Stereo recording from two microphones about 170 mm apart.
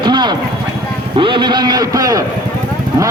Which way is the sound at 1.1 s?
30° right (ahead or behind).